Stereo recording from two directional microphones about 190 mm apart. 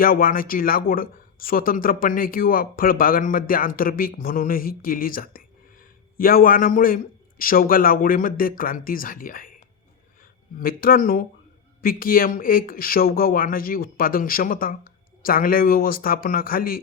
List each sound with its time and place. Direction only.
0.0 s speech: 50° left (ahead or behind)
10.6 s speech: 50° left (ahead or behind)